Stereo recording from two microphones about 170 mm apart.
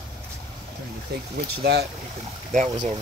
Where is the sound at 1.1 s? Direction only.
70° right (ahead or behind).